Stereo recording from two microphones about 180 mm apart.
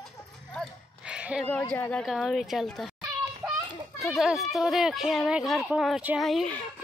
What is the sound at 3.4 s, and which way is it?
Children playing, centre (ahead or behind).